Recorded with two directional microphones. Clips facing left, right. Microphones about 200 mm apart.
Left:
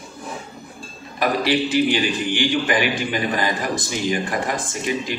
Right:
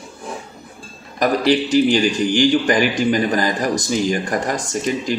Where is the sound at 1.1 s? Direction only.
40° right (ahead or behind).